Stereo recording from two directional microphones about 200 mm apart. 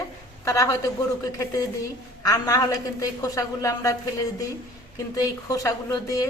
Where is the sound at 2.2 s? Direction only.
15° left (ahead or behind).